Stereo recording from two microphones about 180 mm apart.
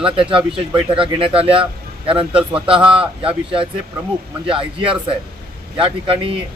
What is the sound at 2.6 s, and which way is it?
Speech, 30° right (ahead or behind).